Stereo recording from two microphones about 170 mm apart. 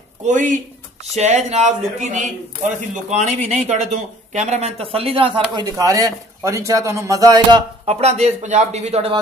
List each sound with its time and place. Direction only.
0.2 s speech: 45° right (ahead or behind); by 5.4 s 30° right (ahead or behind)
5.6 s speech: 20° right (ahead or behind)
7.8 s speech: 40° right (ahead or behind)